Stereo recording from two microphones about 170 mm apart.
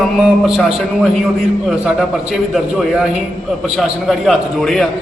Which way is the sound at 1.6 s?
Centre (ahead or behind).